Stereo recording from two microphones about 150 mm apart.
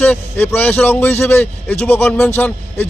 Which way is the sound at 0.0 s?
15° left (ahead or behind).